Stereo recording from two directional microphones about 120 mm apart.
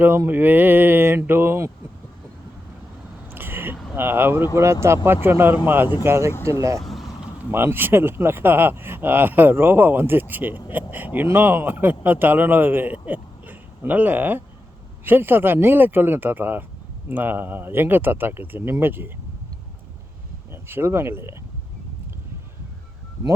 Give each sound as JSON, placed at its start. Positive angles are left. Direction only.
{"t": 0.0, "sound": "speech", "side_deg": -15}
{"t": 3.2, "sound": "a sound", "side_deg": -15}
{"t": 3.9, "sound": "speech", "side_deg": -20}
{"t": 20.5, "sound": "speech", "side_deg": -20}